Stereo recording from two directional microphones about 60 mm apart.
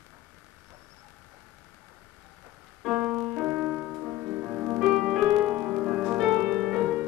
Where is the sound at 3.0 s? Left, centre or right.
Centre.